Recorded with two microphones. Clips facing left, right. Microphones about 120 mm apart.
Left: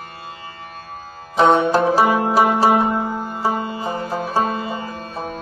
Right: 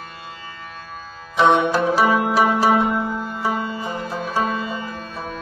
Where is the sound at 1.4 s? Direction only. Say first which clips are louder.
Left 2 dB; 40° left (ahead or behind).